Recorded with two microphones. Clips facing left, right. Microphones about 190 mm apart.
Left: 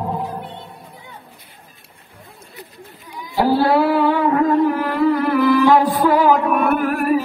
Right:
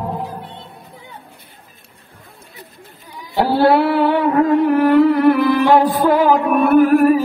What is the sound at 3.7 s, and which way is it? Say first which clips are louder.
Music: right 1 dB; 65° right (ahead or behind).